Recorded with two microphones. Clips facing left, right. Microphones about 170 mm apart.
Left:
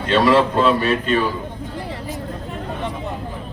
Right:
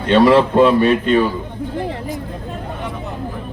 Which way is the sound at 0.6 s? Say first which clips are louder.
Right 5 dB; 20° right (ahead or behind).